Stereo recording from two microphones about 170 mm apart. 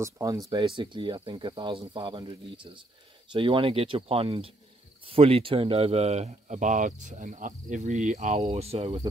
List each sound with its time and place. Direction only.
0.0 s speech: 20° right (ahead or behind); by 9.0 s 35° right (ahead or behind)